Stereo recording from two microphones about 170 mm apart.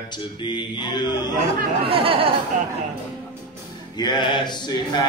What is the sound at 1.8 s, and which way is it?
Speech, 35° right (ahead or behind).